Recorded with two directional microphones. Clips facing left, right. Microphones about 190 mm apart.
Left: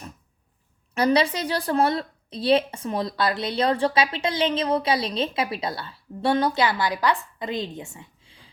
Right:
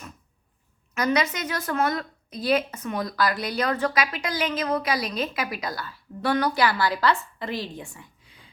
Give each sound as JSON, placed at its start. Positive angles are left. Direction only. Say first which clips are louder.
{"t": 0.9, "sound": "a woman's voice", "louder": "left 4 dB", "side_deg": 30}